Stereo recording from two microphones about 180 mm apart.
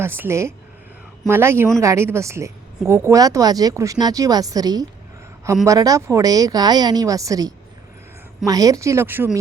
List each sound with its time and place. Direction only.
0.0 s a woman's voice: 15° right (ahead or behind)